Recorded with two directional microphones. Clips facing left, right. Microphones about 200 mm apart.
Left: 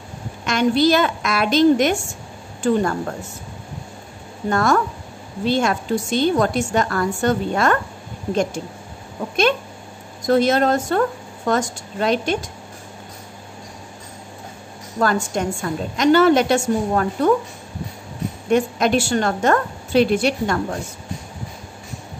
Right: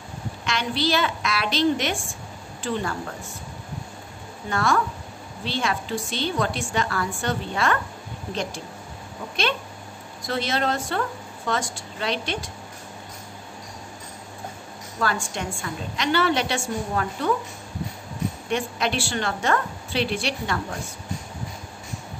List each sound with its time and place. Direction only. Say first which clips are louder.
0.5 s a woman's voice: left 9 dB; 45° left (ahead or behind)
4.5 s a woman's voice: left 5 dB; 45° left (ahead or behind)
10.2 s a woman's voice: left 9 dB; 45° left (ahead or behind)
15.0 s a woman's voice: left 7 dB; 45° left (ahead or behind)
18.5 s a woman's voice: left 10 dB; 45° left (ahead or behind)